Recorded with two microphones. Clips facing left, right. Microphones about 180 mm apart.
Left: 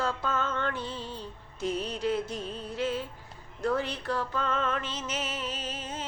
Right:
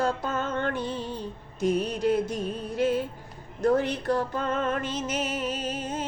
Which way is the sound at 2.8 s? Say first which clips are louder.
Right 6 dB; 45° right (ahead or behind).